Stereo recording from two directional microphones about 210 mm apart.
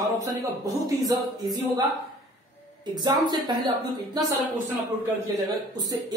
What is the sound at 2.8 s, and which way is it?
A woman's voice, 20° right (ahead or behind).